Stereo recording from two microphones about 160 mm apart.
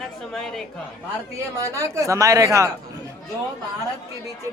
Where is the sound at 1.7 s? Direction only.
20° right (ahead or behind).